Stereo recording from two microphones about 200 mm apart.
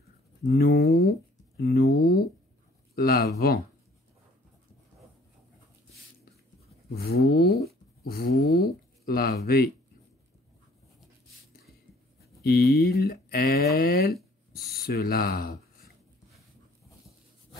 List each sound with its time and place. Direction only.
0.5 s a sound: 50° left (ahead or behind)
3.3 s speech: 50° left (ahead or behind)
7.0 s speech: 50° left (ahead or behind)
8.5 s speech: 50° left (ahead or behind)
12.4 s speech: 50° left (ahead or behind)